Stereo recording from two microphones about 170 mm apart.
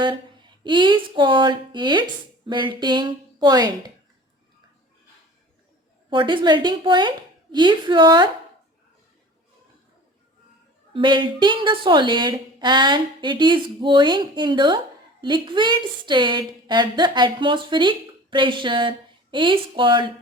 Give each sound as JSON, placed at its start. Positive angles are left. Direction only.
{"t": 0.6, "sound": "a woman's voice", "side_deg": -30}
{"t": 6.1, "sound": "a woman's voice", "side_deg": -30}
{"t": 10.9, "sound": "a woman's voice", "side_deg": -30}